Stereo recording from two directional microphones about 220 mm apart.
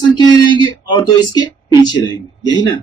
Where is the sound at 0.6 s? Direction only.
20° left (ahead or behind).